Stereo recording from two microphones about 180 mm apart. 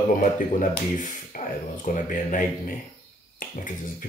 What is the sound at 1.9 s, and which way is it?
Speech, 45° left (ahead or behind).